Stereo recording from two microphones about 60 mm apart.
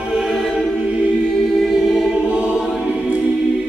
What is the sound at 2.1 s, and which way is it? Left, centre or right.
Choir, centre.